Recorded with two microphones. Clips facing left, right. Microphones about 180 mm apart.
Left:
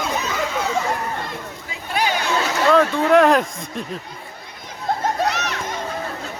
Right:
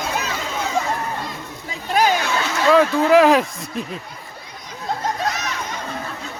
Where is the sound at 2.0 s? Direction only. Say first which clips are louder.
Right 5 dB; 45° right (ahead or behind).